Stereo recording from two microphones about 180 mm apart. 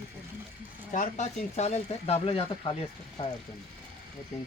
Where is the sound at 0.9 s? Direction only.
40° left (ahead or behind).